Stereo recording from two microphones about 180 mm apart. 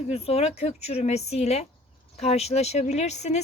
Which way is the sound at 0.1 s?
35° left (ahead or behind).